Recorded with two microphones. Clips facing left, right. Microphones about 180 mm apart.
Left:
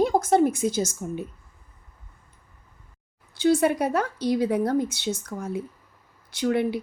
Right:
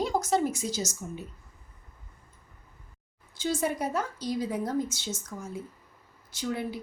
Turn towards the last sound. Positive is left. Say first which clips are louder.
# left 9 dB
turn(degrees=70)  # may be behind; listen again after turning